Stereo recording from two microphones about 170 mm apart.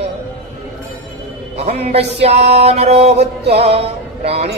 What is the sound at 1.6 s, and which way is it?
Music, 40° right (ahead or behind).